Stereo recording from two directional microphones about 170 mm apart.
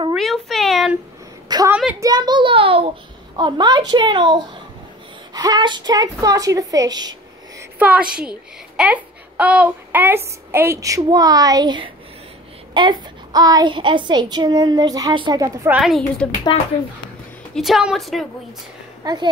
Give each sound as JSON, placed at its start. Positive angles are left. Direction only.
{"t": 0.1, "sound": "a sound", "side_deg": 0}
{"t": 1.7, "sound": "a woman's voice", "side_deg": -5}
{"t": 2.0, "sound": "a child's voice", "side_deg": -25}
{"t": 7.8, "sound": "a child's voice", "side_deg": -5}
{"t": 15.7, "sound": "a woman's voice", "side_deg": 0}
{"t": 16.5, "sound": "speech", "side_deg": 35}
{"t": 17.6, "sound": "a woman's voice", "side_deg": 0}
{"t": 19.0, "sound": "a child's voice", "side_deg": -25}